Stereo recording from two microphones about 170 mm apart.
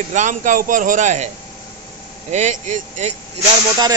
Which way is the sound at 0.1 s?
45° right (ahead or behind).